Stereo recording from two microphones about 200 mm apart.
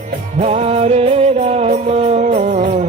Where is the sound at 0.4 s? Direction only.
30° right (ahead or behind).